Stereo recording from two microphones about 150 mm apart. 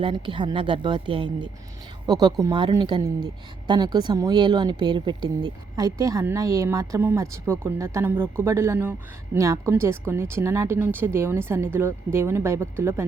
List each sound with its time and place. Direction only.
0.0 s a woman's voice: 35° right (ahead or behind); by 13.1 s 15° right (ahead or behind)